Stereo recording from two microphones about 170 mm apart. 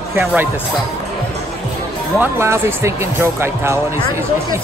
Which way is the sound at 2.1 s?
15° right (ahead or behind).